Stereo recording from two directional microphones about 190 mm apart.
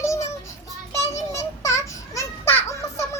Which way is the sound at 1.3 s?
15° left (ahead or behind).